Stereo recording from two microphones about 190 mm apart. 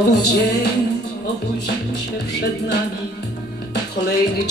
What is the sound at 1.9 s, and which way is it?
Music, 60° left (ahead or behind).